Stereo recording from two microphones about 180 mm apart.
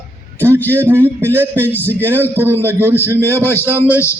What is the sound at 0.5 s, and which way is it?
Speech, 10° left (ahead or behind).